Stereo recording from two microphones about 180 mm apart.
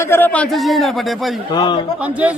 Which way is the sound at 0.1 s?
10° left (ahead or behind).